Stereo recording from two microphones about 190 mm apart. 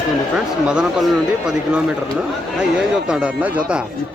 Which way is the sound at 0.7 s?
5° right (ahead or behind).